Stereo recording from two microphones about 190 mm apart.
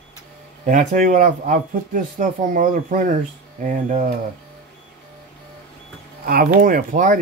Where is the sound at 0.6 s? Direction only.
45° right (ahead or behind).